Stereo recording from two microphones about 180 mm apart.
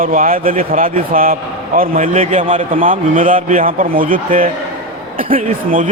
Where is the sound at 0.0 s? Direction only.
50° right (ahead or behind).